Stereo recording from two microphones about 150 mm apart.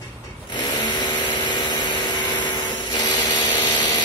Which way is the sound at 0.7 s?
30° left (ahead or behind).